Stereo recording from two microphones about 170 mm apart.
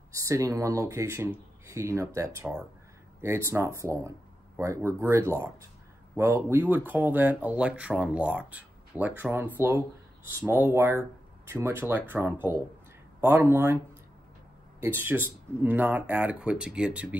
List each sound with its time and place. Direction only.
0.1 s speech: 20° right (ahead or behind)
14.8 s speech: 10° right (ahead or behind)